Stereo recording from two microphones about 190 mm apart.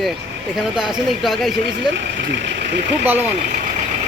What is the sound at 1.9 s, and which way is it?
Speech, 70° right (ahead or behind).